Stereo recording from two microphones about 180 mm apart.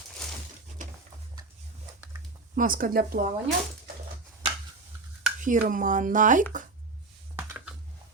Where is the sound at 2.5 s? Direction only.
50° right (ahead or behind).